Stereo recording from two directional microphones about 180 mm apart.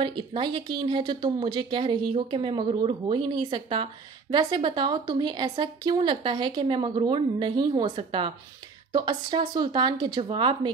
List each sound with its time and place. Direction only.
0.0 s speech: 25° right (ahead or behind)